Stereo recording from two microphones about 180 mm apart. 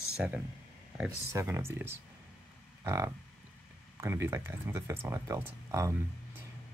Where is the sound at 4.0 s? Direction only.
15° right (ahead or behind).